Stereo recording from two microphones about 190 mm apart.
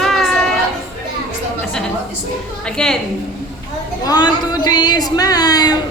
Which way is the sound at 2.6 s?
5° left (ahead or behind).